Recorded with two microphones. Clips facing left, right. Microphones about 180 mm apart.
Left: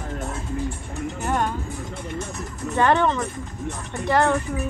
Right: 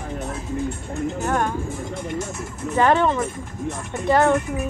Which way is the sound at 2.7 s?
10° right (ahead or behind).